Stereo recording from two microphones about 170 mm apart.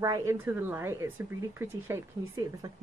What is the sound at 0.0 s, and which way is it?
Speech, 20° right (ahead or behind).